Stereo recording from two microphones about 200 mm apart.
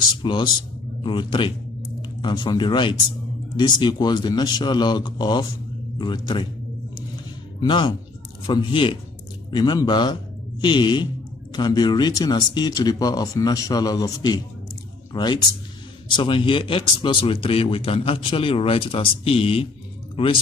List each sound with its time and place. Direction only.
0.2 s speech: 25° left (ahead or behind)
7.6 s speech: 25° left (ahead or behind)